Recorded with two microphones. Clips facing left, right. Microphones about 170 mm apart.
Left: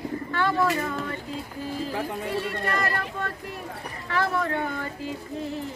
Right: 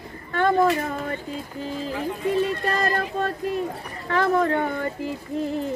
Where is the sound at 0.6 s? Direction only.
35° right (ahead or behind).